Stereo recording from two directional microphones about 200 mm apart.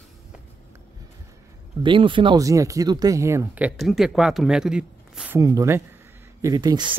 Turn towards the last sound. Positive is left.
turn(degrees=-20)  # may be behind; listen again after turning